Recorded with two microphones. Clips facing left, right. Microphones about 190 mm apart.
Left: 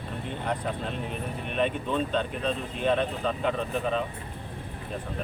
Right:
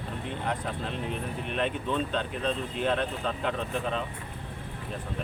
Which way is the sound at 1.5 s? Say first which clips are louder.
Left 2 dB; 5° left (ahead or behind).